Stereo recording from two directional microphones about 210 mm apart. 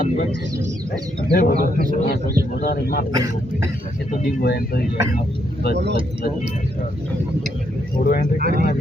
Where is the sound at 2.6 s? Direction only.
45° left (ahead or behind).